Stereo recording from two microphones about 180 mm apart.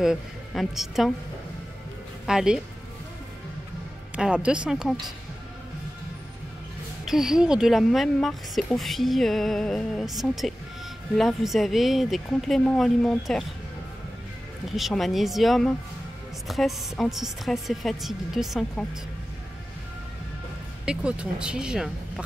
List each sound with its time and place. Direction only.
0.0 s a woman's voice: centre (ahead or behind)
2.2 s a woman's voice: 5° right (ahead or behind)
4.1 s a woman's voice: 5° right (ahead or behind)
7.1 s a woman's voice: centre (ahead or behind)
14.8 s a woman's voice: centre (ahead or behind)
20.8 s a woman's voice: 5° right (ahead or behind)